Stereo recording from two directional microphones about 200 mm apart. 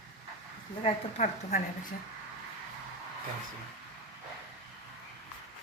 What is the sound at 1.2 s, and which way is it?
Speech, 40° left (ahead or behind).